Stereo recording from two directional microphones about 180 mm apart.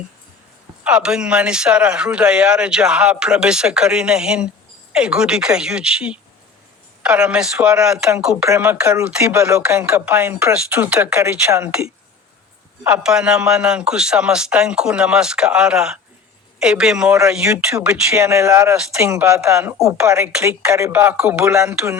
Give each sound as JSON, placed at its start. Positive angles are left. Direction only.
{"t": 0.9, "sound": "speech", "side_deg": -5}
{"t": 8.4, "sound": "speech", "side_deg": -15}
{"t": 17.7, "sound": "speech", "side_deg": -15}